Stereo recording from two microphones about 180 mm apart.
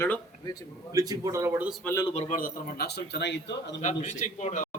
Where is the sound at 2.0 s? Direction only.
35° left (ahead or behind).